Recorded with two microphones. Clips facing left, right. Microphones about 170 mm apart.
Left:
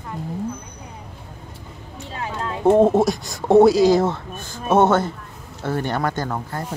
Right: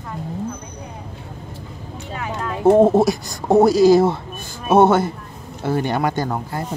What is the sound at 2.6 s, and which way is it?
Speech, 5° right (ahead or behind).